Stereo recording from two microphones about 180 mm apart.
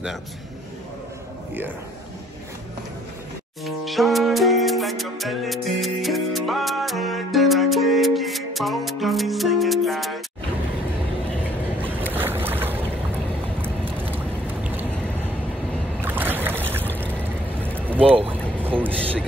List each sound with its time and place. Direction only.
3.6 s music: centre (ahead or behind)
11.8 s boat: 10° right (ahead or behind)
13.9 s vehicle: 10° right (ahead or behind)
16.0 s boat: 10° right (ahead or behind)
18.0 s boat: 30° right (ahead or behind)